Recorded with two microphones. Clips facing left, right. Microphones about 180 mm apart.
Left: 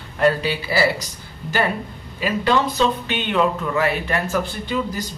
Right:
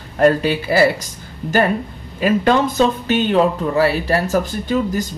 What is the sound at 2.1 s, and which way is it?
A man's voice, 50° right (ahead or behind).